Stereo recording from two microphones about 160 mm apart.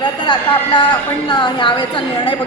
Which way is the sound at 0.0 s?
30° left (ahead or behind).